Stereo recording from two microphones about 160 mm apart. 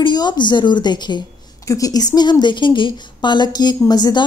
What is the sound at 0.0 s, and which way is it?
A woman's voice, 25° left (ahead or behind).